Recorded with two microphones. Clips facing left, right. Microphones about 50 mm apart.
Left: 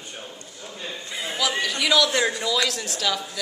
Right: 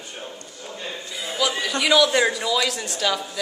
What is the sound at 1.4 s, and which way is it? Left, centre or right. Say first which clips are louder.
A woman's voice: right 2 dB; centre.